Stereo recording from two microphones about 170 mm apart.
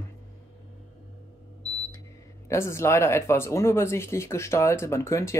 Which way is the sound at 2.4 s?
15° left (ahead or behind).